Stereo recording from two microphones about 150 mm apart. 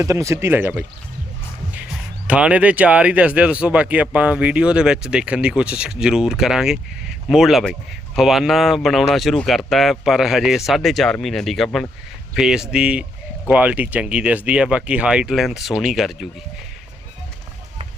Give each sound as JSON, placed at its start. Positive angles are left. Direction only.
{"t": 0.0, "sound": "speech", "side_deg": -20}
{"t": 2.2, "sound": "speech", "side_deg": -10}